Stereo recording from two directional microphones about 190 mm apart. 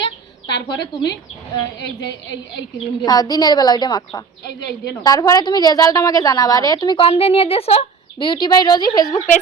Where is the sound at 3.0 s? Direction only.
20° left (ahead or behind).